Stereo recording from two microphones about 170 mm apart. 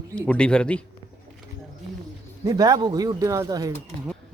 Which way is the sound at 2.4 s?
20° right (ahead or behind).